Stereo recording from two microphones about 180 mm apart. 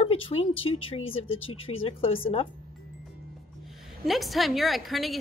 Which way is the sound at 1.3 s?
90° left.